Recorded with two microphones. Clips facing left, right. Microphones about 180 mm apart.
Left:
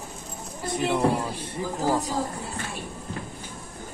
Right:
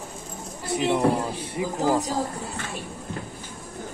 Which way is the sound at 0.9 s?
10° right (ahead or behind).